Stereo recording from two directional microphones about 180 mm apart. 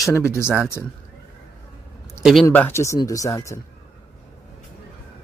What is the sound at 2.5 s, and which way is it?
Speech, 10° left (ahead or behind).